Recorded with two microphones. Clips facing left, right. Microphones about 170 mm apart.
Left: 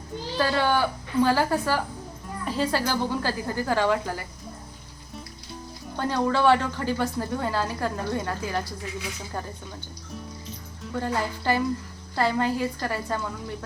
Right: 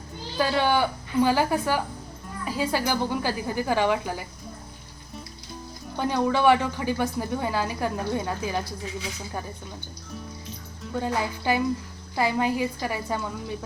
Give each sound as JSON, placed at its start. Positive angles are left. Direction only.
{"t": 0.3, "sound": "a woman's voice", "side_deg": -15}
{"t": 6.0, "sound": "a woman's voice", "side_deg": -15}
{"t": 11.0, "sound": "a woman's voice", "side_deg": -15}